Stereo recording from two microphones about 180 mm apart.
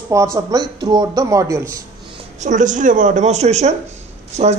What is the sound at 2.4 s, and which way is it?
Speech, 45° right (ahead or behind).